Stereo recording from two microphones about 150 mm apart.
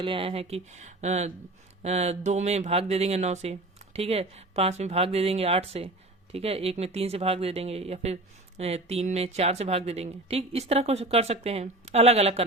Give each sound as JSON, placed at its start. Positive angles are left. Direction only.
{"t": 0.0, "sound": "speech", "side_deg": -35}